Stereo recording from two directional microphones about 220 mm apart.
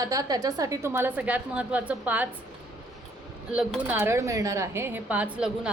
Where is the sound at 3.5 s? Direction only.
5° right (ahead or behind).